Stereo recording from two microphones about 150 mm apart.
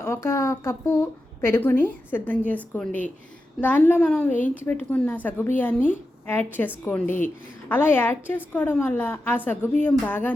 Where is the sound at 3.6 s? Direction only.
10° left (ahead or behind).